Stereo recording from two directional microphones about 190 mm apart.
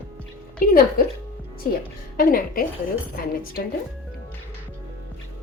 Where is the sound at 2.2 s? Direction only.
50° left (ahead or behind).